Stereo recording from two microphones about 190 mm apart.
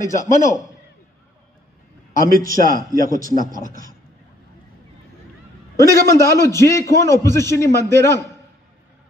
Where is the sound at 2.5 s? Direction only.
45° right (ahead or behind).